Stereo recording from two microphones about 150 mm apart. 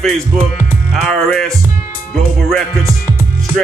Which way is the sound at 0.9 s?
5° left (ahead or behind).